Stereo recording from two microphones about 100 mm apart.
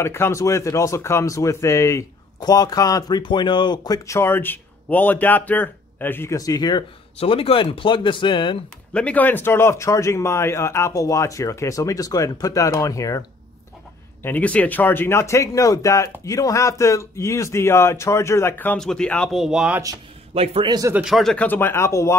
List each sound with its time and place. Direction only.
0.0 s speech: 25° left (ahead or behind)
6.3 s speech: 40° left (ahead or behind)
7.2 s speech: 70° left (ahead or behind); by 8.5 s 55° left (ahead or behind)
8.9 s a man's voice: 15° left (ahead or behind); by 13.2 s 35° left (ahead or behind)
14.2 s a man's voice: 15° left (ahead or behind)
18.7 s speech: 5° left (ahead or behind)
19.3 s speech: 5° right (ahead or behind)
20.3 s a man's voice: 90° right
20.6 s speech: 40° right (ahead or behind)
21.0 s speech: centre (ahead or behind)
21.5 s a man's voice: 20° left (ahead or behind)